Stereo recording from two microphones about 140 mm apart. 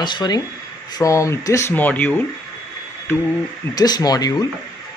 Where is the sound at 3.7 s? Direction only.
30° left (ahead or behind).